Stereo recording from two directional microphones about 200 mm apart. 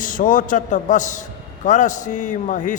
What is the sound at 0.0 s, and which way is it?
A man's voice, 40° left (ahead or behind).